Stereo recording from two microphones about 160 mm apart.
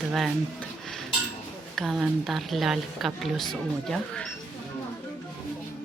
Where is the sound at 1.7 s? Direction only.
Centre (ahead or behind).